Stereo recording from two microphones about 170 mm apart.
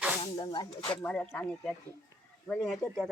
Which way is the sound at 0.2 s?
30° left (ahead or behind).